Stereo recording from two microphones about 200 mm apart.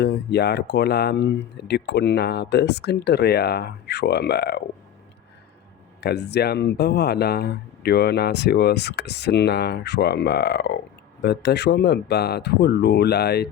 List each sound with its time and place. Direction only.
0.0 s speech: 55° left (ahead or behind)
6.0 s speech: 55° left (ahead or behind)